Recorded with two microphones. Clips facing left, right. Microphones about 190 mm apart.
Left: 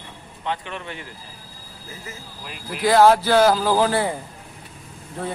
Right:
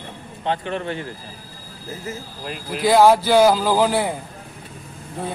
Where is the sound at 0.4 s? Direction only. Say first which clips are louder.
Right 5 dB; 35° right (ahead or behind).